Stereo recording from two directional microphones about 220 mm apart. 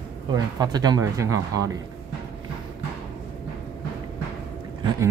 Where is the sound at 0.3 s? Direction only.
20° right (ahead or behind).